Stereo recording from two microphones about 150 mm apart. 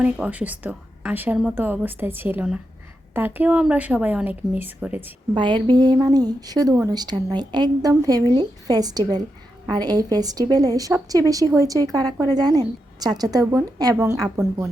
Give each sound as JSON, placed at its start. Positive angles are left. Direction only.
{"t": 0.0, "sound": "a woman's voice", "side_deg": -10}
{"t": 5.3, "sound": "a woman's voice", "side_deg": -30}